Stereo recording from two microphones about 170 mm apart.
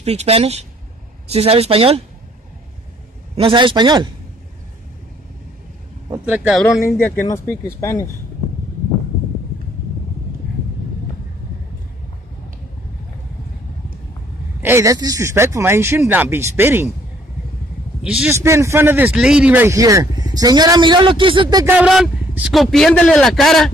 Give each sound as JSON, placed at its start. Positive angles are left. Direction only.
{"t": 0.0, "sound": "speech", "side_deg": -40}
{"t": 3.3, "sound": "speech", "side_deg": -30}
{"t": 6.2, "sound": "speech", "side_deg": -5}
{"t": 7.2, "sound": "speech", "side_deg": 15}
{"t": 14.6, "sound": "speech", "side_deg": -15}
{"t": 18.0, "sound": "a man's voice", "side_deg": -5}
{"t": 18.3, "sound": "speech", "side_deg": -15}
{"t": 21.6, "sound": "a man's voice", "side_deg": -5}